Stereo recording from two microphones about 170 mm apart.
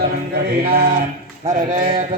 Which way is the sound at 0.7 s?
55° right (ahead or behind).